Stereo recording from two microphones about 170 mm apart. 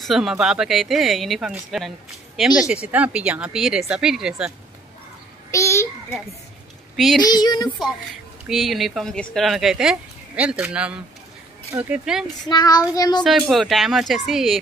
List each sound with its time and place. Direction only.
0.0 s speech: centre (ahead or behind)
5.5 s a sound: 15° left (ahead or behind)
7.2 s child singing: 25° left (ahead or behind)
8.5 s speech: centre (ahead or behind)
12.4 s child singing: 25° left (ahead or behind)
13.2 s speech: centre (ahead or behind)